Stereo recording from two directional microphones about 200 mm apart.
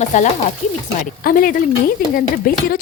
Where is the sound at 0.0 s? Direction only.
35° left (ahead or behind).